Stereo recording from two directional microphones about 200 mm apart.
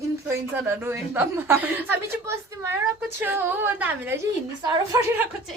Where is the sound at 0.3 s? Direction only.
10° right (ahead or behind).